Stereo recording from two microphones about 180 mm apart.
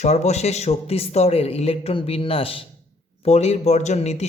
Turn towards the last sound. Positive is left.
turn(degrees=35)  # may be behind; listen again after turning